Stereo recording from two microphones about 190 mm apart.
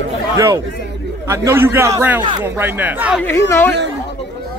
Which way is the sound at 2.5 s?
10° right (ahead or behind).